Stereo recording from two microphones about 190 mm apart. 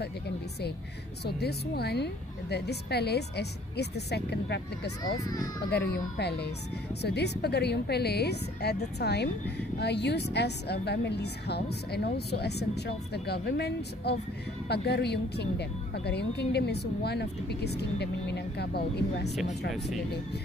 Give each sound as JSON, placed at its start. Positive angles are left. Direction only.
{"t": 1.2, "sound": "a woman's voice", "side_deg": 60}